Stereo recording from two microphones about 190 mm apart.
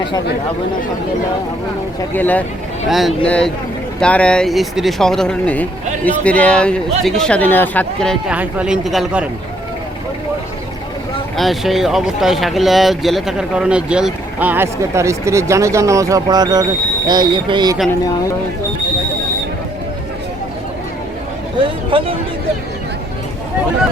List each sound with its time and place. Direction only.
2.1 s a man's voice: 10° left (ahead or behind)
11.3 s speech: centre (ahead or behind); by 17.7 s 25° right (ahead or behind)
21.8 s speech: 25° right (ahead or behind)